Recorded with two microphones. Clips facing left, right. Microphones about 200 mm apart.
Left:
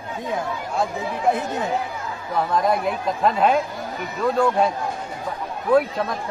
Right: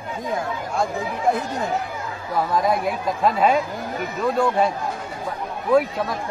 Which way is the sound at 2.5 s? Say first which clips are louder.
Left 1 dB; centre (ahead or behind).